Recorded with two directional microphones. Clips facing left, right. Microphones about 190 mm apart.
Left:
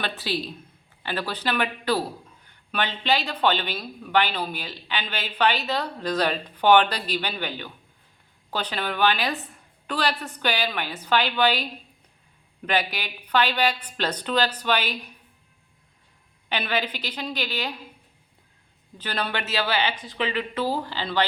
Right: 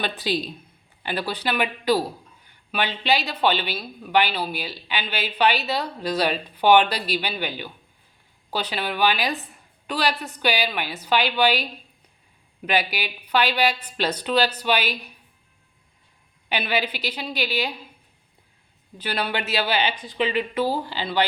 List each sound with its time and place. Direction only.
0.0 s speech: 15° right (ahead or behind)
16.5 s speech: 10° right (ahead or behind)
18.9 s speech: 10° right (ahead or behind)